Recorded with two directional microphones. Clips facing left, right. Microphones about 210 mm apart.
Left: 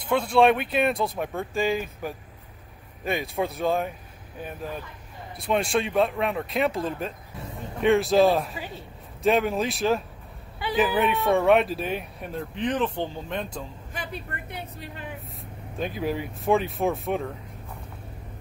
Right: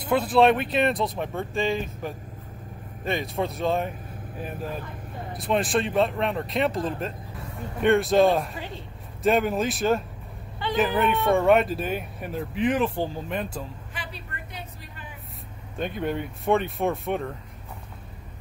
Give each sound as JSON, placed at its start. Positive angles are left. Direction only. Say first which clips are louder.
{"t": 0.1, "sound": "speech", "louder": "even", "side_deg": -5}
{"t": 5.4, "sound": "speech", "louder": "even", "side_deg": 0}
{"t": 13.9, "sound": "vehicle", "louder": "left 7 dB", "side_deg": 55}
{"t": 15.8, "sound": "speech", "louder": "even", "side_deg": 0}